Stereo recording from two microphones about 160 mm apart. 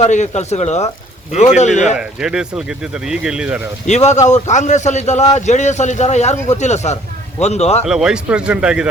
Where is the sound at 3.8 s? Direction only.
45° left (ahead or behind).